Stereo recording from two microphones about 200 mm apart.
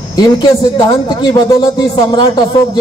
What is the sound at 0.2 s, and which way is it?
A man's voice, 20° left (ahead or behind).